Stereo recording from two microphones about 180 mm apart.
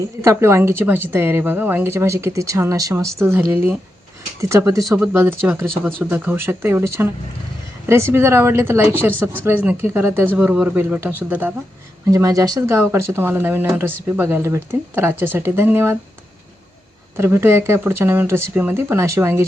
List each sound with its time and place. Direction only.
0.2 s speech: 15° right (ahead or behind)
12.1 s speech: 20° right (ahead or behind)
17.2 s speech: 15° right (ahead or behind)